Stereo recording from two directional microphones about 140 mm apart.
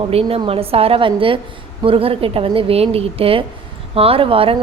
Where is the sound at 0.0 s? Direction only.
45° right (ahead or behind).